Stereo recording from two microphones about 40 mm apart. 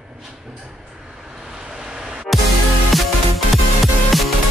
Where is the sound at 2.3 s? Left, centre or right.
Left.